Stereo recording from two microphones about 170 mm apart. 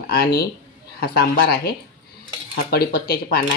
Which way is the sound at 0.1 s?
65° left (ahead or behind).